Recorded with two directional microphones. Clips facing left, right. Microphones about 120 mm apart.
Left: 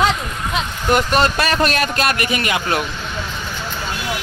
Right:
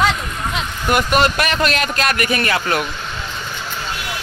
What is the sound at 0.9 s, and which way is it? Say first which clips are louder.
A man's voice: right 1 dB; 30° left (ahead or behind).